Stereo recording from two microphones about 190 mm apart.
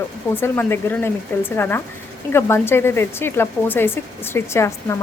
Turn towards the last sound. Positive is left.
turn(degrees=15)  # may be behind; listen again after turning